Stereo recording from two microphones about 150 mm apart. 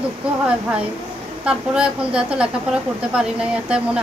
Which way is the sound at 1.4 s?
5° right (ahead or behind).